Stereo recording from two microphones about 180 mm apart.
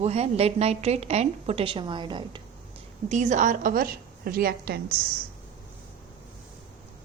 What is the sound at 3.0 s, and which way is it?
A woman's voice, 40° right (ahead or behind).